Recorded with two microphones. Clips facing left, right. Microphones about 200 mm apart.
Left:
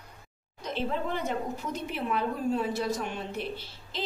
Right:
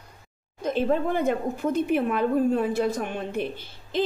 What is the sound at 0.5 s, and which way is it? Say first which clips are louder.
A woman's voice: right 8 dB; 50° right (ahead or behind).